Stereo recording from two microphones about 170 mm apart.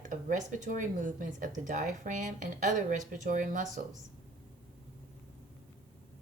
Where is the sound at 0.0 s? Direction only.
50° right (ahead or behind).